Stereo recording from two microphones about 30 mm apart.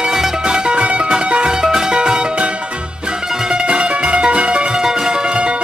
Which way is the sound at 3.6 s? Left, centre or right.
Right.